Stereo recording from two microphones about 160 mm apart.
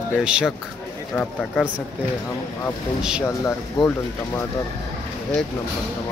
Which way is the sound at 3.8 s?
25° left (ahead or behind).